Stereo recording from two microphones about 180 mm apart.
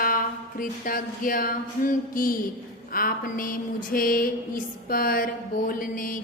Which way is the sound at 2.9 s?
55° left (ahead or behind).